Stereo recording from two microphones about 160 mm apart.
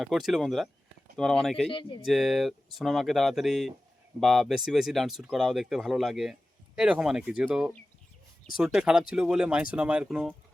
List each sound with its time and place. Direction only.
0.0 s speech: centre (ahead or behind)
1.7 s speech: 30° left (ahead or behind)
2.0 s speech: centre (ahead or behind)